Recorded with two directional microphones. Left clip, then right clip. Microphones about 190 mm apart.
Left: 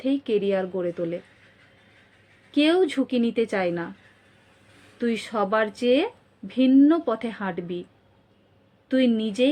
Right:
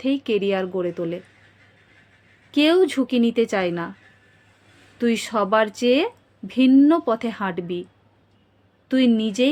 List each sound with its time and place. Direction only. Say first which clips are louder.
0.0 s a woman's voice: right 2 dB; 20° right (ahead or behind)
2.5 s a woman's voice: right 3 dB; 20° right (ahead or behind)
4.9 s a woman's voice: right 4 dB; 20° right (ahead or behind)
8.9 s a woman's voice: right 2 dB; 20° right (ahead or behind)